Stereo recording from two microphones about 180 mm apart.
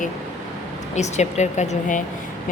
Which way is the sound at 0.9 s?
40° left (ahead or behind).